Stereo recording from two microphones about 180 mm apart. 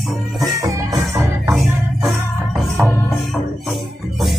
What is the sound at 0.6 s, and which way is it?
Music, 20° right (ahead or behind).